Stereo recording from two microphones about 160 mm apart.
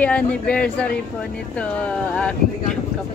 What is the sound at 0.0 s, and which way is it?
Speech, 10° left (ahead or behind).